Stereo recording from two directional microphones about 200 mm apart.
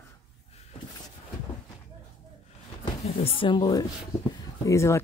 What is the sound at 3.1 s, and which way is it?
Speech, 25° left (ahead or behind).